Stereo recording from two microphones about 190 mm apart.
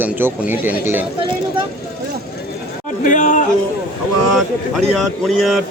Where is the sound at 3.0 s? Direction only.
40° left (ahead or behind).